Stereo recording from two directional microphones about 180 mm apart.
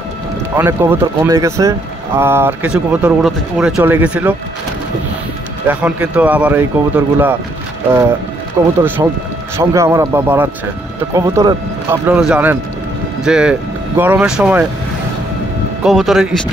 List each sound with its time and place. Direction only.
0.6 s speech: 15° right (ahead or behind)
5.7 s speech: 10° right (ahead or behind)
8.8 s speech: 10° right (ahead or behind)
15.8 s speech: centre (ahead or behind)